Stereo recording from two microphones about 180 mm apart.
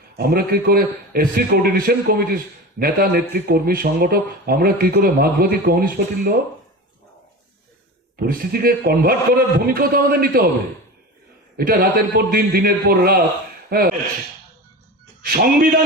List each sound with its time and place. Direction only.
0.2 s a man's voice: 55° right (ahead or behind)
8.1 s a man's voice: 55° right (ahead or behind)
11.5 s a man's voice: 55° right (ahead or behind)
15.2 s a man's voice: 55° right (ahead or behind)